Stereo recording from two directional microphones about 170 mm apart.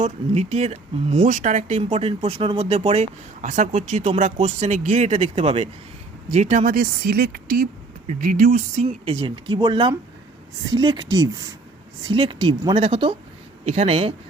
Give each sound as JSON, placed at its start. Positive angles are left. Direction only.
{"t": 0.0, "sound": "speech", "side_deg": -40}